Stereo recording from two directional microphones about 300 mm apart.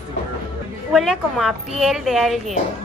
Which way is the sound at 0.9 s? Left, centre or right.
Centre.